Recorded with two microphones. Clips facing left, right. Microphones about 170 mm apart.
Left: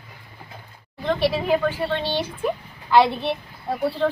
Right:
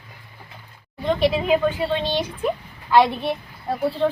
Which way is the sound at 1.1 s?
20° right (ahead or behind).